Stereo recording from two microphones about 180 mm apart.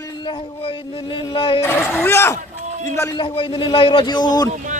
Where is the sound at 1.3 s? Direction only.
30° left (ahead or behind).